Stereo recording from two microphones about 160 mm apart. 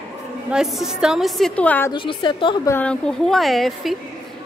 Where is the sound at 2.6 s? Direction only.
10° left (ahead or behind).